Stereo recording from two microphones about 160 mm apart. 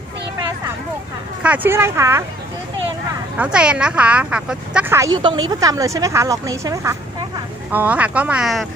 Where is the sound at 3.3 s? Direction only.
5° right (ahead or behind).